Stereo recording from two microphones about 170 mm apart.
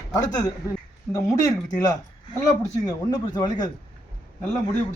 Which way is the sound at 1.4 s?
25° left (ahead or behind).